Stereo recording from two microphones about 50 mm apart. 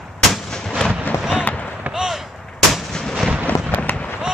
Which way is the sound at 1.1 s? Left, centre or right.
Left.